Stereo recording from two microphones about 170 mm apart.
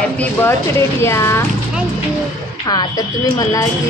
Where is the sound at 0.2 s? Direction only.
10° left (ahead or behind).